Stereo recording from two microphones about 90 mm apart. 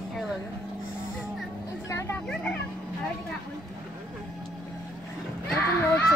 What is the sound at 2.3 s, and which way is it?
Music, 10° left (ahead or behind).